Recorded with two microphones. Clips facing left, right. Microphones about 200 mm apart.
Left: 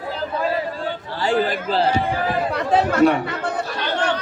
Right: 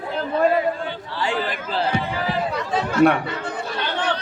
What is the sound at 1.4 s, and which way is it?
Speech, 35° left (ahead or behind).